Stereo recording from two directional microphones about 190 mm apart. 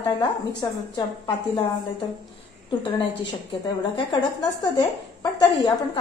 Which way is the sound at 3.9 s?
20° left (ahead or behind).